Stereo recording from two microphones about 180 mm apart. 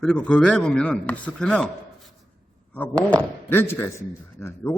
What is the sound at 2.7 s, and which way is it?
A man's voice, 10° left (ahead or behind).